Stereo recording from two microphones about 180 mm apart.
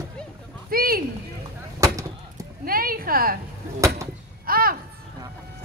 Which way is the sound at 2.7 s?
55° right (ahead or behind).